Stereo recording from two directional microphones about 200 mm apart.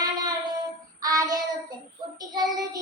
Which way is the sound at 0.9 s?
15° right (ahead or behind).